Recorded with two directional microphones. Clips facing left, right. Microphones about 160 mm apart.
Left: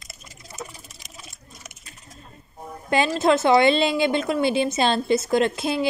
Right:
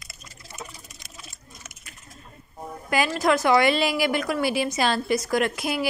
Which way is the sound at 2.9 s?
25° left (ahead or behind).